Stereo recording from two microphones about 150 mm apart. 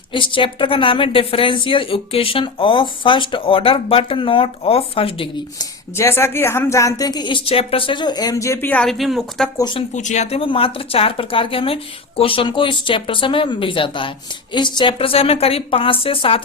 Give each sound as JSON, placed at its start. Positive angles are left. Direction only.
{"t": 0.1, "sound": "a woman's voice", "side_deg": 35}
{"t": 6.0, "sound": "a woman's voice", "side_deg": 15}
{"t": 8.7, "sound": "a woman's voice", "side_deg": 5}
{"t": 9.6, "sound": "a woman's voice", "side_deg": 30}
{"t": 9.9, "sound": "a woman's voice", "side_deg": 55}